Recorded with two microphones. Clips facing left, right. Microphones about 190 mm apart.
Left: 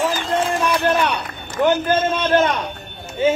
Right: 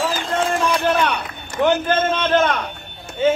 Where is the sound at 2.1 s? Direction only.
10° left (ahead or behind).